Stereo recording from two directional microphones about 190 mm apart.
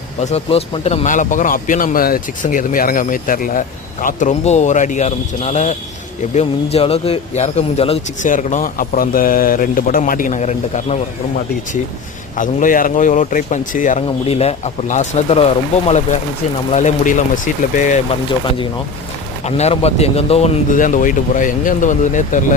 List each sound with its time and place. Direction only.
0.2 s speech: 35° left (ahead or behind)
12.4 s speech: 45° left (ahead or behind)
16.7 s speech: 40° left (ahead or behind)
19.5 s speech: 35° left (ahead or behind)
20.7 s speech: 45° left (ahead or behind)